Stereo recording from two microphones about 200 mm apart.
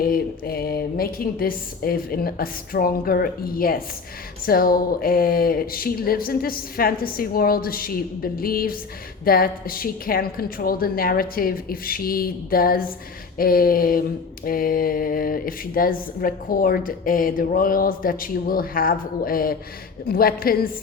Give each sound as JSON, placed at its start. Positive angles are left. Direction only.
{"t": 0.0, "sound": "speech", "side_deg": 50}